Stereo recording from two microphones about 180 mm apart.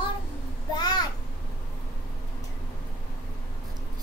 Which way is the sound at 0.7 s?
25° left (ahead or behind).